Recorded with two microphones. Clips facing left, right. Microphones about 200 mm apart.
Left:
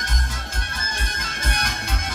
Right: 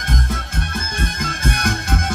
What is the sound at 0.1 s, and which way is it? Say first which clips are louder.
Music: right 9 dB; 55° right (ahead or behind).